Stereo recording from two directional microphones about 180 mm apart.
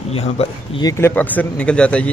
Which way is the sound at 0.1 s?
35° left (ahead or behind).